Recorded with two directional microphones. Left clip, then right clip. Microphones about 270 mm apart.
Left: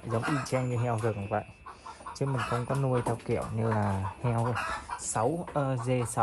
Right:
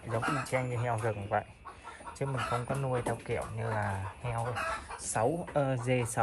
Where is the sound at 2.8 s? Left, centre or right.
Left.